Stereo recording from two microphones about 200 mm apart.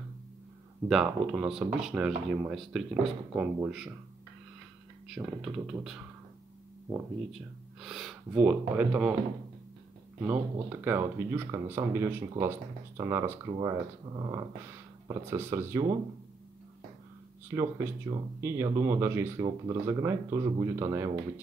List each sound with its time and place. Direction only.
0.8 s speech: centre (ahead or behind)
5.1 s speech: centre (ahead or behind)
10.2 s speech: 10° right (ahead or behind)
17.5 s speech: 15° right (ahead or behind)